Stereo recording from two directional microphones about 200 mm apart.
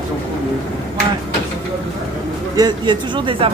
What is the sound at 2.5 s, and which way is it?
A woman's voice, 20° right (ahead or behind).